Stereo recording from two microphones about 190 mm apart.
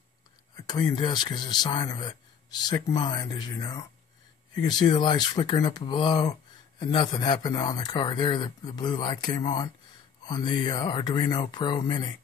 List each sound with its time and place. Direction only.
0.6 s speech: 20° left (ahead or behind)